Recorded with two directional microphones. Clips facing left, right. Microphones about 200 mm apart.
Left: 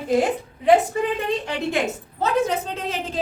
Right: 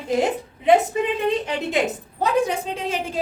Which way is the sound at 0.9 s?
20° right (ahead or behind).